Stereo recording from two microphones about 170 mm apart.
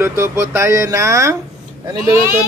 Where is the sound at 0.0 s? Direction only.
15° right (ahead or behind).